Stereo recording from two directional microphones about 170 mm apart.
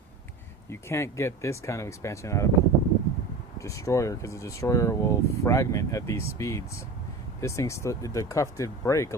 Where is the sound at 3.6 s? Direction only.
20° left (ahead or behind).